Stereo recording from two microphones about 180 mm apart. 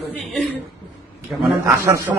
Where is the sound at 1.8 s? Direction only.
15° right (ahead or behind).